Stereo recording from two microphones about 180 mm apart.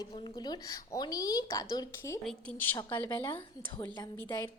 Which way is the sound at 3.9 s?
20° left (ahead or behind).